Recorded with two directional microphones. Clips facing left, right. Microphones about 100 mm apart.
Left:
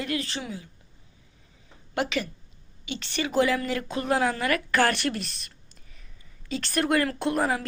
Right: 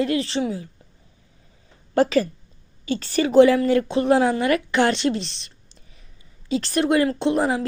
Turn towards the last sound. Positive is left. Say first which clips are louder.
# right 5 dB
turn(degrees=-30)  # may be behind; listen again after turning